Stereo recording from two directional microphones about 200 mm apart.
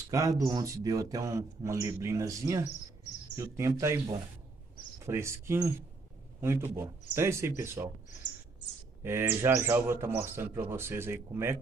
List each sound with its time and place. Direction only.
0.1 s speech: 15° right (ahead or behind)
9.0 s speech: 10° right (ahead or behind)